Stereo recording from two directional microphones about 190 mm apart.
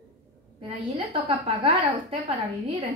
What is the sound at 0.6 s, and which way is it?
A woman's voice, 30° right (ahead or behind).